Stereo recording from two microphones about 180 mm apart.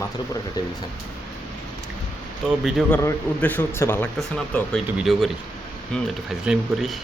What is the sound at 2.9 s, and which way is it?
Speech, 10° left (ahead or behind).